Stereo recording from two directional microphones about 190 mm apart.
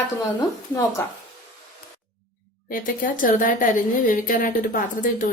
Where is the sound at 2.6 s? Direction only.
45° left (ahead or behind).